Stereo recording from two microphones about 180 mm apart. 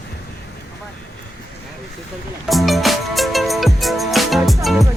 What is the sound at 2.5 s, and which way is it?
Music, centre (ahead or behind).